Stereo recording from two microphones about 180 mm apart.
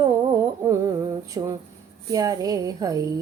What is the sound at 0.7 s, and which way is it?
Speech, 20° right (ahead or behind).